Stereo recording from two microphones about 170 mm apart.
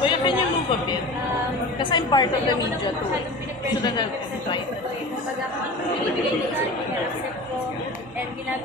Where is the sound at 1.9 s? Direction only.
25° left (ahead or behind).